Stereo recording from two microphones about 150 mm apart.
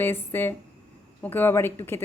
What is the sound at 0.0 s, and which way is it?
A woman's voice, 15° left (ahead or behind).